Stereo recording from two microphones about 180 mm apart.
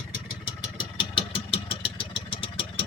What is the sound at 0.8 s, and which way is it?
Vehicle, 30° left (ahead or behind).